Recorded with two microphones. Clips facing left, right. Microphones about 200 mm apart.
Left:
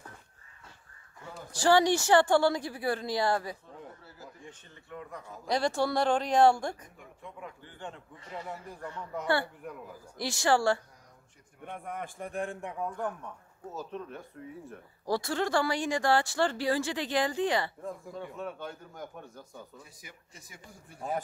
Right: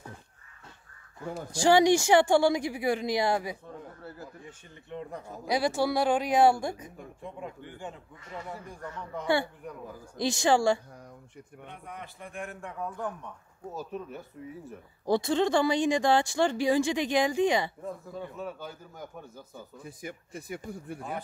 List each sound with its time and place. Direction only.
1.5 s speech: 15° right (ahead or behind)
4.0 s a sound: 55° right (ahead or behind)
4.8 s speech: 25° right (ahead or behind)
5.4 s speech: 10° right (ahead or behind)
7.0 s speech: 30° right (ahead or behind)
7.6 s a man's voice: 5° right (ahead or behind)
10.1 s speech: 20° right (ahead or behind)
11.6 s a man's voice: 50° left (ahead or behind)
12.5 s a man's voice: 15° left (ahead or behind)
13.7 s a man's voice: 5° right (ahead or behind)
15.0 s speech: 20° right (ahead or behind)
18.2 s a man's voice: centre (ahead or behind)
20.0 s speech: 55° right (ahead or behind)